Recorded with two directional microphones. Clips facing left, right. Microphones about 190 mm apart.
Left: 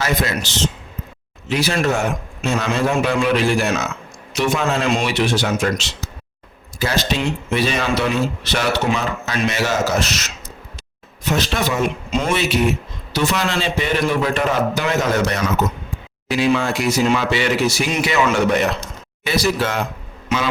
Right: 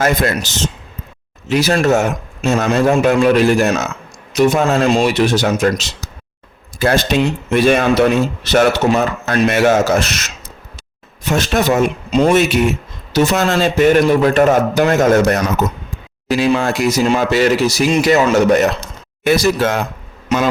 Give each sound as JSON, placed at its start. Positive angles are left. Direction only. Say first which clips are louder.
{"t": 0.0, "sound": "speech", "louder": "right 5 dB", "side_deg": -45}
{"t": 6.7, "sound": "speech", "louder": "right 6 dB", "side_deg": -55}
{"t": 11.3, "sound": "speech", "louder": "right 5 dB", "side_deg": -50}
{"t": 12.1, "sound": "speech", "louder": "right 9 dB", "side_deg": -35}
{"t": 13.1, "sound": "speech", "louder": "right 6 dB", "side_deg": -45}